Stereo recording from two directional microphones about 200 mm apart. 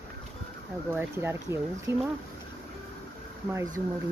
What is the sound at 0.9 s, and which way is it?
Speech, 10° right (ahead or behind).